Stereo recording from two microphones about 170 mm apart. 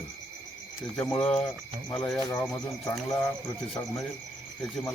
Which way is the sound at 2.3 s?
20° left (ahead or behind).